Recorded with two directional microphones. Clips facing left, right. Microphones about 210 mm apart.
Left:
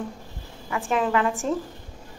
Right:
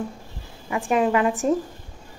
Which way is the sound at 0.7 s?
15° right (ahead or behind).